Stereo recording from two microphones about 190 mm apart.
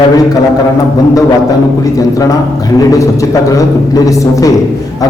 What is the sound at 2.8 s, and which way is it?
Speech, 15° left (ahead or behind).